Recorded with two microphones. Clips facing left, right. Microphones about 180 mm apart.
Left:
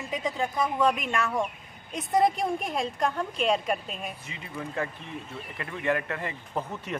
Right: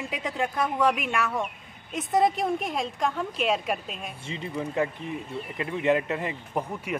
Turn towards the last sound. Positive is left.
turn(degrees=-15)  # may be behind; listen again after turning